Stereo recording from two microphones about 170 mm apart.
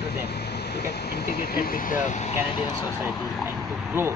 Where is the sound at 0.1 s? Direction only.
75° left (ahead or behind); by 2.3 s 45° left (ahead or behind).